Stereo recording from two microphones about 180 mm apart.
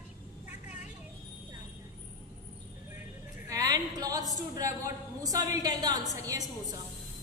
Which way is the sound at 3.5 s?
20° right (ahead or behind).